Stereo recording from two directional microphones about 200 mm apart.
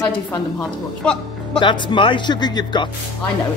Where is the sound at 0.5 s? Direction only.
5° left (ahead or behind).